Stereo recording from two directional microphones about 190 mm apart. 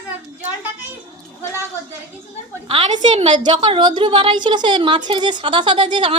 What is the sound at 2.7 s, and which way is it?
Speech, 30° right (ahead or behind).